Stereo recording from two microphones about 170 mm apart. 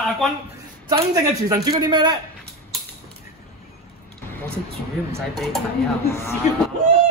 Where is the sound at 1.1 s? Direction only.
20° right (ahead or behind).